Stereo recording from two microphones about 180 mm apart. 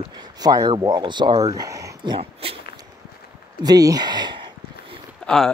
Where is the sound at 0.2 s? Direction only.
20° right (ahead or behind).